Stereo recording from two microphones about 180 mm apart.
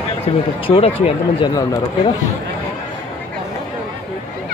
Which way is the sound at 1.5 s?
20° left (ahead or behind).